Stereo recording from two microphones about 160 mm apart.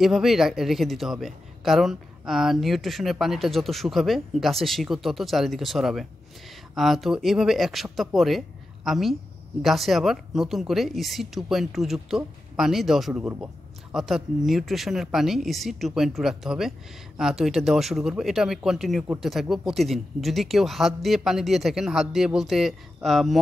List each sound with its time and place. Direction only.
0.0 s a man's voice: centre (ahead or behind)